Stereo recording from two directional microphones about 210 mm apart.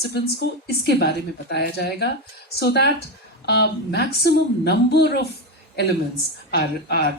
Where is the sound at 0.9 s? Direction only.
50° left (ahead or behind).